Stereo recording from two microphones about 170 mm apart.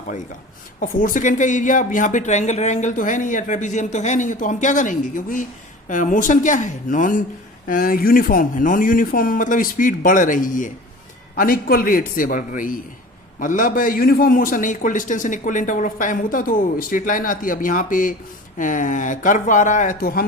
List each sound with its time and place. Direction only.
0.8 s a man's voice: 50° left (ahead or behind)